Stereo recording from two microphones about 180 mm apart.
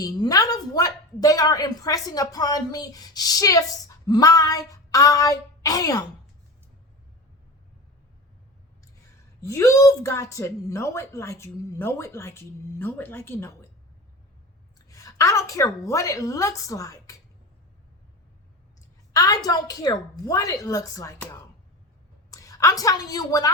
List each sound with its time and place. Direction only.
0.0 s a woman's voice: 20° left (ahead or behind)
9.4 s a woman's voice: 15° left (ahead or behind)
14.8 s a woman's voice: 20° left (ahead or behind)
19.1 s a woman's voice: 20° left (ahead or behind)
22.3 s a woman's voice: 20° left (ahead or behind)